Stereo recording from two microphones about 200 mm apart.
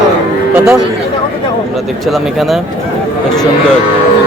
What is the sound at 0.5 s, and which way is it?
Speech, 5° right (ahead or behind).